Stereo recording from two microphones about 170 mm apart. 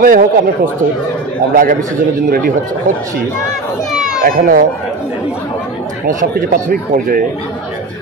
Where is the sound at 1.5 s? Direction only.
55° right (ahead or behind).